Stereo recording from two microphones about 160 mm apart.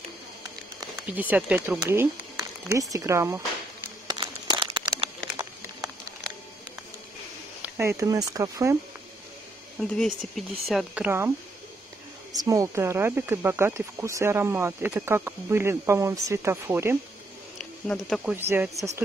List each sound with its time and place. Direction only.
1.1 s speech: 10° right (ahead or behind)
4.1 s a sound: 30° right (ahead or behind)
7.6 s speech: 15° right (ahead or behind)
9.8 s speech: centre (ahead or behind)
11.1 s speech: 15° right (ahead or behind)
17.8 s speech: centre (ahead or behind)
18.3 s speech: 15° right (ahead or behind)